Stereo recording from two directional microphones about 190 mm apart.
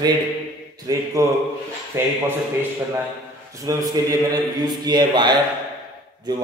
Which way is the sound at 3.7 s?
20° right (ahead or behind).